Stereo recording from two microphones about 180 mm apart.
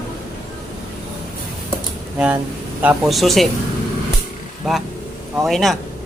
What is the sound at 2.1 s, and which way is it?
Speech, 5° right (ahead or behind).